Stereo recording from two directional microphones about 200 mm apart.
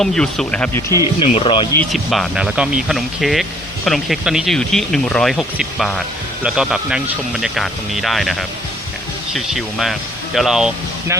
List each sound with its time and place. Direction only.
0.0 s speech: centre (ahead or behind)
0.9 s speech: 15° right (ahead or behind)
1.2 s speech: 25° left (ahead or behind)
1.7 s speech: 5° left (ahead or behind)